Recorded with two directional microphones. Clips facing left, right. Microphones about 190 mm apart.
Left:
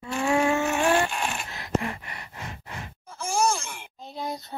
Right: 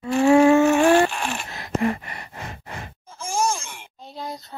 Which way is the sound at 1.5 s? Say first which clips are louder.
Right 8 dB; 45° right (ahead or behind).